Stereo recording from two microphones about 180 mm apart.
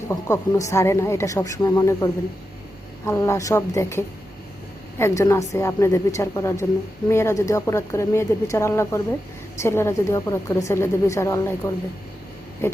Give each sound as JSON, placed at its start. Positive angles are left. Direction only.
{"t": 0.1, "sound": "a woman's voice", "side_deg": 15}
{"t": 3.1, "sound": "a woman's voice", "side_deg": 15}